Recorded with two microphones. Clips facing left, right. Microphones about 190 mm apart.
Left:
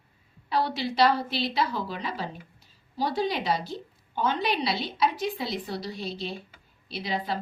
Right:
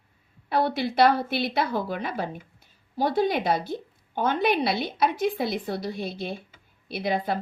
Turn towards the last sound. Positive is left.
turn(degrees=-50)  # may be behind; listen again after turning